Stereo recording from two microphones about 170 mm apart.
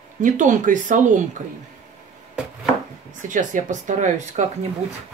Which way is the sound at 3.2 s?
45° right (ahead or behind).